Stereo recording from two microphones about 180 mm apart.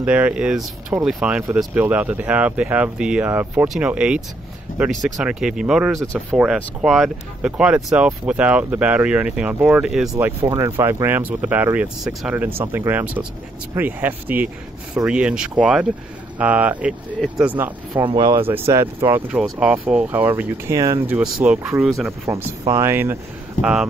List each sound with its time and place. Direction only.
0.0 s speech: 5° right (ahead or behind)
10.1 s speech: 20° right (ahead or behind)
17.9 s speech: 25° right (ahead or behind)
21.2 s speech: 5° right (ahead or behind)
23.6 s speech: 5° right (ahead or behind)